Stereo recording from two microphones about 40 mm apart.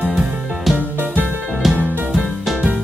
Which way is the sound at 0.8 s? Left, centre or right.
Right.